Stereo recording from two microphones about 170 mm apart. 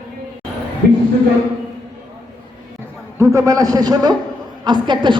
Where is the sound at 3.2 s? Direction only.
20° right (ahead or behind).